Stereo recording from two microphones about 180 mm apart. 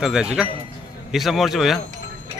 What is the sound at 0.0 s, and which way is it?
Speech, 5° right (ahead or behind).